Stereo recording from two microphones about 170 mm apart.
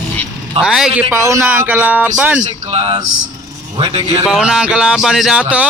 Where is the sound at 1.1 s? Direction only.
15° right (ahead or behind).